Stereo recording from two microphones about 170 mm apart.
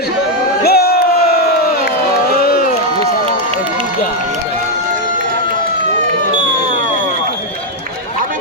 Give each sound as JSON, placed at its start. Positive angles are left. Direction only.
{"t": 0.6, "sound": "crowd", "side_deg": 70}
{"t": 2.3, "sound": "run", "side_deg": 60}